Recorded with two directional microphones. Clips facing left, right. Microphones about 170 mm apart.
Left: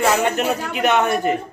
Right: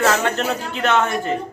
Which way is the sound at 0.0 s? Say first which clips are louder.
Left 1 dB; 15° left (ahead or behind).